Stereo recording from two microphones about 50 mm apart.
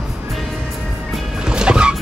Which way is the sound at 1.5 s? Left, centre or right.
Centre.